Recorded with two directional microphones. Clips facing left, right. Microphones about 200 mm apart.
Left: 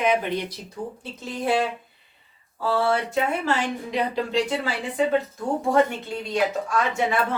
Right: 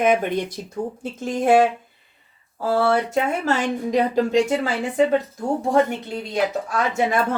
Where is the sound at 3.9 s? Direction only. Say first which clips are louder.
Right 6 dB; 45° right (ahead or behind).